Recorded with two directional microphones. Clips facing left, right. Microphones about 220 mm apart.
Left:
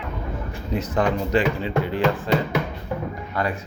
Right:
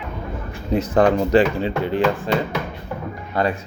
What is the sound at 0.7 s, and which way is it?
Speech, 30° right (ahead or behind).